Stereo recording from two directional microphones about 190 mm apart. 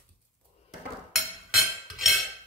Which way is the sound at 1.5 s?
Centre (ahead or behind).